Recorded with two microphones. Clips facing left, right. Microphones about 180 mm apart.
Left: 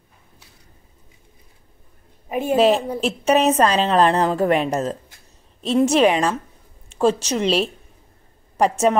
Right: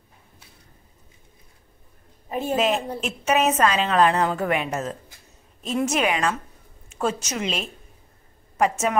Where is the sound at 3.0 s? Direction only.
35° left (ahead or behind).